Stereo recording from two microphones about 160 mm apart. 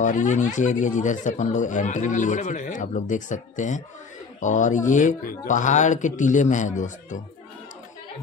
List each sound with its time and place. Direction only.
0.0 s speech: 50° left (ahead or behind)